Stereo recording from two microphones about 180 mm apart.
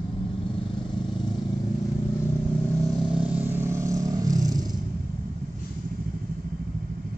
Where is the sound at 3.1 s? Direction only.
10° right (ahead or behind).